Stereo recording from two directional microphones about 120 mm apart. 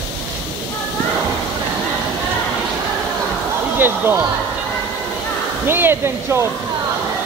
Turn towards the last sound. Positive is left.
turn(degrees=-20)  # may be behind; listen again after turning